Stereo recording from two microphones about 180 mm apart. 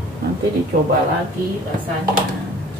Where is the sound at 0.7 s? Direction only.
55° right (ahead or behind).